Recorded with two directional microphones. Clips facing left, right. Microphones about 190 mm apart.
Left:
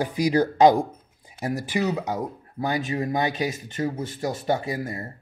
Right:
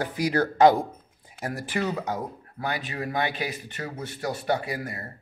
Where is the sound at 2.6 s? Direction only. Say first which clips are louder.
Left 5 dB; 20° left (ahead or behind).